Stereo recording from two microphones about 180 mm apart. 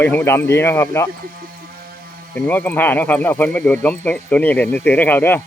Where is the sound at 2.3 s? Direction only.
10° left (ahead or behind).